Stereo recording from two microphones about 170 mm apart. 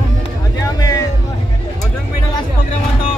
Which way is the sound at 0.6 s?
20° left (ahead or behind).